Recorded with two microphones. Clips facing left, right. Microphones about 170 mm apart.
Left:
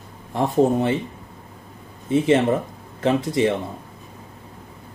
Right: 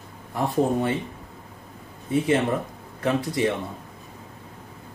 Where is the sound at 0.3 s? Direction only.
25° left (ahead or behind).